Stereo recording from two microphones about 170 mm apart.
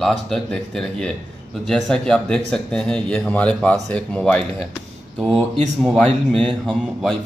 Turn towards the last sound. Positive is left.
turn(degrees=5)  # may be behind; listen again after turning